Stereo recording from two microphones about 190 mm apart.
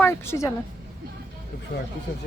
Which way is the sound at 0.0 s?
15° left (ahead or behind).